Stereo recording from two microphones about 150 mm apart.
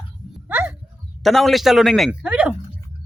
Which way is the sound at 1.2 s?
Centre (ahead or behind).